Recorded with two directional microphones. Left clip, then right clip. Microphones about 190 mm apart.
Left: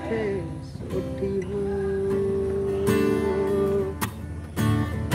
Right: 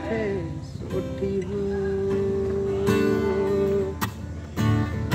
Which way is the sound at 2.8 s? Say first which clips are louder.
Even; 15° left (ahead or behind).